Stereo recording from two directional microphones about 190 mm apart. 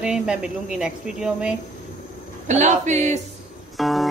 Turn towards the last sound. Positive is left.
turn(degrees=0)  # may be behind; listen again after turning